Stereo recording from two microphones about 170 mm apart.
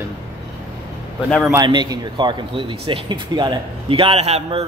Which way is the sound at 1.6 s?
25° right (ahead or behind).